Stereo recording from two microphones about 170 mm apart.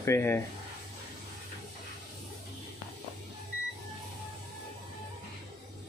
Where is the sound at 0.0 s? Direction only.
15° left (ahead or behind).